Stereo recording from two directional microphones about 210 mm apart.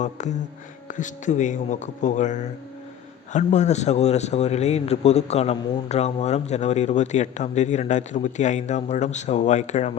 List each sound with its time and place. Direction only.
0.0 s a man's voice: 35° left (ahead or behind)